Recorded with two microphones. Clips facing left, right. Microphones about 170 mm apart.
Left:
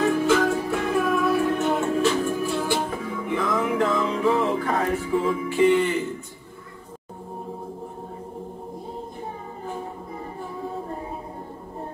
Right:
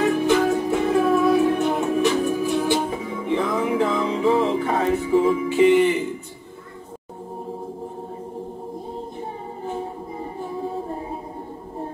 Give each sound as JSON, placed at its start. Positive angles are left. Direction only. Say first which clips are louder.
{"t": 0.0, "sound": "music", "louder": "right 1 dB", "side_deg": -15}